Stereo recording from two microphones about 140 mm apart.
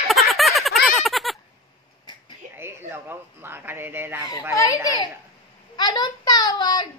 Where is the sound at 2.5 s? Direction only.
15° right (ahead or behind).